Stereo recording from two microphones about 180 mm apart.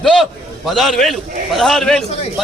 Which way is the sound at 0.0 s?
Centre (ahead or behind).